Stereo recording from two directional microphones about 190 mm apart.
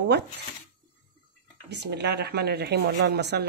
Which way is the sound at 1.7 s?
65° right (ahead or behind).